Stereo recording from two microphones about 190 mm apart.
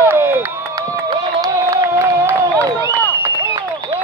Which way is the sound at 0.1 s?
10° right (ahead or behind).